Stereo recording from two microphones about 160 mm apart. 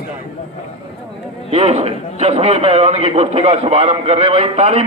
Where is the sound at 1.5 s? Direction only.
40° right (ahead or behind).